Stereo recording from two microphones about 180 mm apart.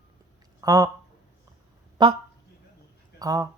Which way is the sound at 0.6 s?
20° right (ahead or behind).